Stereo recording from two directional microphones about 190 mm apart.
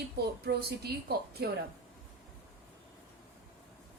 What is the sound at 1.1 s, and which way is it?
Speech, 55° right (ahead or behind).